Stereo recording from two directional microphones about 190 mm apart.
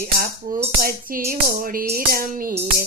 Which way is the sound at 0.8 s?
50° right (ahead or behind).